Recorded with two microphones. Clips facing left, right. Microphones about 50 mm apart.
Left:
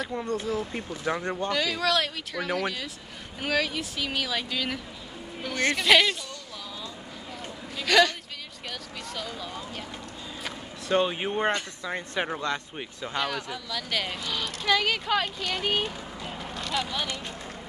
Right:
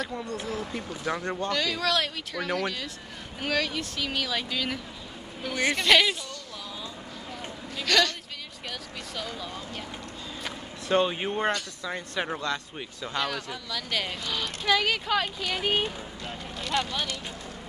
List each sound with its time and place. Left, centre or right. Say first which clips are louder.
0.1 s speech: left 4 dB; left
1.5 s speech: left 1 dB; centre
7.7 s a sound: left 3 dB; centre
8.6 s speech: left 1 dB; centre
10.4 s a sound: left 1 dB; centre
11.3 s speech: left 1 dB; left
13.3 s speech: left 1 dB; centre
16.5 s vehicle: right 1 dB; centre